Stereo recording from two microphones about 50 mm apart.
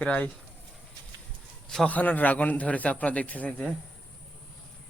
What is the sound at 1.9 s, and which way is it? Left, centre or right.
A man's voice, left.